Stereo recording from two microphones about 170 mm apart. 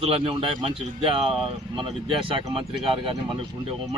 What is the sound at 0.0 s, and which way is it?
Speech, 35° right (ahead or behind).